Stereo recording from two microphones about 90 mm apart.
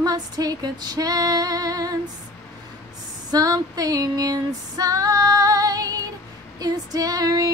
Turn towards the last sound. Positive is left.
turn(degrees=-45)  # may be behind; listen again after turning